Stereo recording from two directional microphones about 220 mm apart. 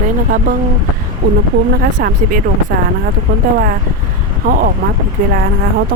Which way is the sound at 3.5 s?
40° right (ahead or behind).